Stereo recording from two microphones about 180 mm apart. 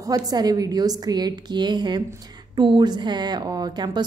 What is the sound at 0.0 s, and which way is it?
A woman's voice, 20° right (ahead or behind).